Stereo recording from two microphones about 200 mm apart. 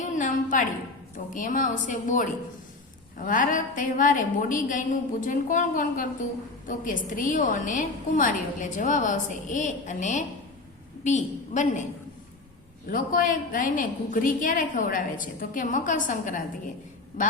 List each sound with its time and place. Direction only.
0.0 s a sound: 40° left (ahead or behind)
1.3 s a woman's voice: 40° left (ahead or behind)
12.9 s a woman's voice: 40° left (ahead or behind)